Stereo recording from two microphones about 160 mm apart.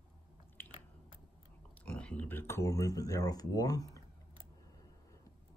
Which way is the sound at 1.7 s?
5° left (ahead or behind).